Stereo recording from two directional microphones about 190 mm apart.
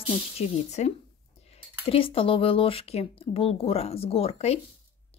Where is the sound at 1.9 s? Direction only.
30° left (ahead or behind).